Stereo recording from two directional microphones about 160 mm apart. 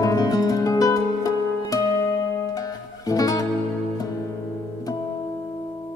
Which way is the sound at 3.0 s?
20° left (ahead or behind).